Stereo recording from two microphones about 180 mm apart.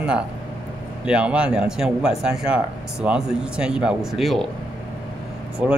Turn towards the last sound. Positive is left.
turn(degrees=-5)  # may be behind; listen again after turning